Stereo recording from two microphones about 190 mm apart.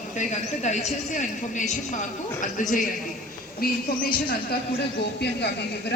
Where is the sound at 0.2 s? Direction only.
40° left (ahead or behind).